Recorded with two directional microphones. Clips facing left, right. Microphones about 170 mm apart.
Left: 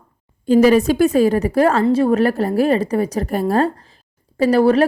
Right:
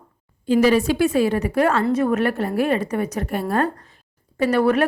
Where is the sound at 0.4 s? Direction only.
45° left (ahead or behind).